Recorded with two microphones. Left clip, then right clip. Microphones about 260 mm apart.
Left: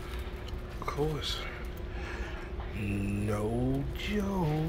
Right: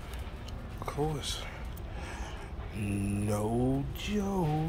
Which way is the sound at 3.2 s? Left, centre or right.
Centre.